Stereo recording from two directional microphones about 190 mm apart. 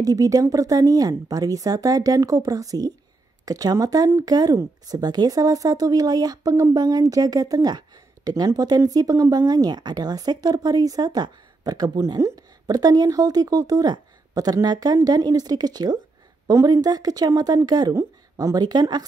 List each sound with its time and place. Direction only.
0.0 s speech: 20° right (ahead or behind)